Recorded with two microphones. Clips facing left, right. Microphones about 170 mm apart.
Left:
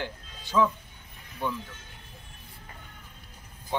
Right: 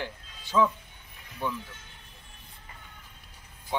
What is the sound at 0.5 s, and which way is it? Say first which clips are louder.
Speech: even; centre (ahead or behind).